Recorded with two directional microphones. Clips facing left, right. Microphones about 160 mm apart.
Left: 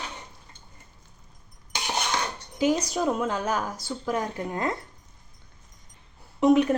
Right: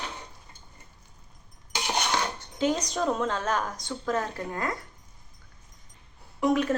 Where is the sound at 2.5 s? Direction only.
10° left (ahead or behind).